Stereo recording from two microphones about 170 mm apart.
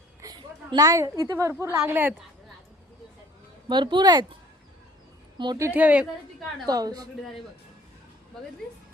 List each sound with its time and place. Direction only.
0.2 s a sound: 20° right (ahead or behind)
1.2 s speech: 15° right (ahead or behind)
3.7 s speech: 25° right (ahead or behind)
5.4 s speech: 20° right (ahead or behind)
6.7 s speech: 20° right (ahead or behind)